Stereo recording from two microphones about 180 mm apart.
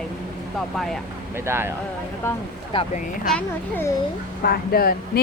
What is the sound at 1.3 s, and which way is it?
Speech, 15° right (ahead or behind).